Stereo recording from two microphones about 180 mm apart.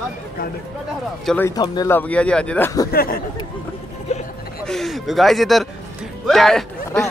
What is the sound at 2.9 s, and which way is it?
Speech, 55° left (ahead or behind).